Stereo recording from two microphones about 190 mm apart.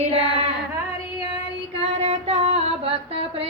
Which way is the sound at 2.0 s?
35° right (ahead or behind).